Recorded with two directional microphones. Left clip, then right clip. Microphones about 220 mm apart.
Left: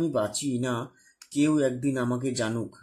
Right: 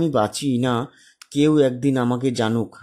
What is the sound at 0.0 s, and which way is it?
Speech, 40° right (ahead or behind).